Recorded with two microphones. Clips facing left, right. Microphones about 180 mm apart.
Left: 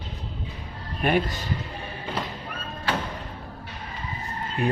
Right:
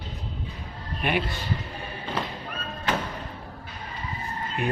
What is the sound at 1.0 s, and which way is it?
Speech, 45° left (ahead or behind).